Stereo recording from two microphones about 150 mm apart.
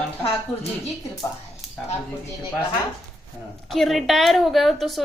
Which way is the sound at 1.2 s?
25° left (ahead or behind).